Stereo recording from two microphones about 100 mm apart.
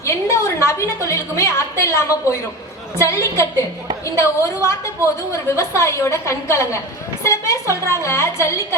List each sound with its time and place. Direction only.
0.0 s a woman's voice: 30° left (ahead or behind)